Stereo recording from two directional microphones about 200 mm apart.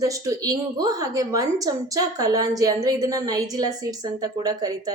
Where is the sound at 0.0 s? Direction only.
15° right (ahead or behind).